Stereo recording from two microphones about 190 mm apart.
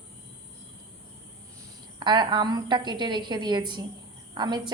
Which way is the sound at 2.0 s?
25° right (ahead or behind).